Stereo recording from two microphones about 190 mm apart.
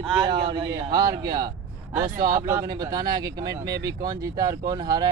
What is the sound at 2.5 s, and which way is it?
Speech, 20° right (ahead or behind).